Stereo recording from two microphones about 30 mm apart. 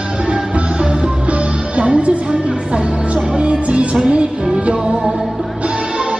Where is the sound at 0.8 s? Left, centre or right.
Right.